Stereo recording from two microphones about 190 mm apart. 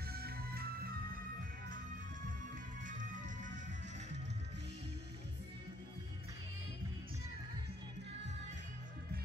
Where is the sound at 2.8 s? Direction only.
45° right (ahead or behind).